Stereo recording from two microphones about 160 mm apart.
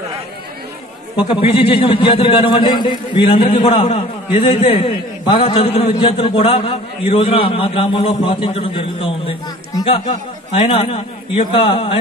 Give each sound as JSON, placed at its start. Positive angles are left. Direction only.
{"t": 1.1, "sound": "a man's voice", "side_deg": 30}